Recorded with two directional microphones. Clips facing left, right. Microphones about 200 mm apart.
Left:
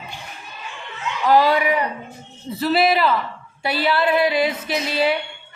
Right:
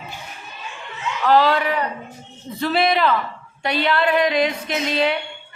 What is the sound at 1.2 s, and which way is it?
A woman's voice, 10° left (ahead or behind).